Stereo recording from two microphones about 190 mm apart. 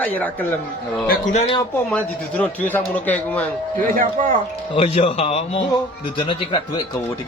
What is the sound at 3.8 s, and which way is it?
Speech, 45° right (ahead or behind).